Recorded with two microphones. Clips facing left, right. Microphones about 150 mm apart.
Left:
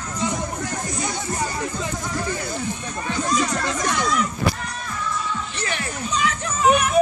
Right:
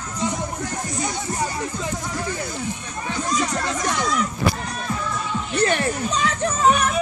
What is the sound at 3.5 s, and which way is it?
Music, 25° right (ahead or behind).